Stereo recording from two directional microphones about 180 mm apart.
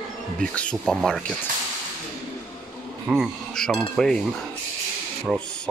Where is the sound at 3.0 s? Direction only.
5° right (ahead or behind).